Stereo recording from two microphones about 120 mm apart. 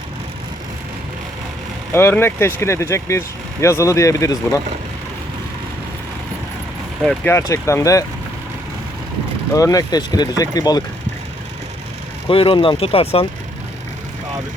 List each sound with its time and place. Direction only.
1.9 s speech: 20° left (ahead or behind)
7.3 s speech: 25° left (ahead or behind)
9.5 s speech: 30° left (ahead or behind)
12.3 s speech: 50° left (ahead or behind)